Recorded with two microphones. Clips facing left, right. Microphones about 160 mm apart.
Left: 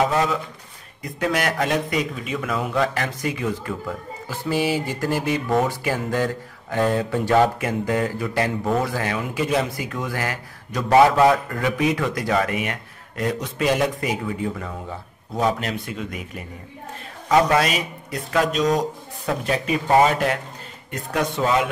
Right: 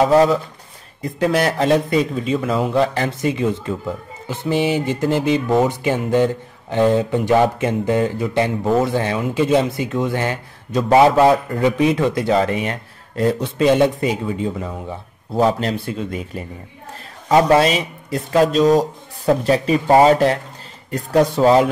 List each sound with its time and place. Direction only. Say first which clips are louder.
0.0 s speech: right 7 dB; 35° right (ahead or behind)
15.3 s speech: right 5 dB; 30° right (ahead or behind)